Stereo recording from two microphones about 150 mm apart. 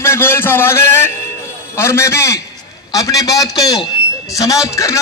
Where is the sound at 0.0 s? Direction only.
15° left (ahead or behind).